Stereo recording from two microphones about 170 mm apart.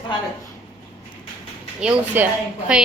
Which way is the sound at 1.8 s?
5° right (ahead or behind).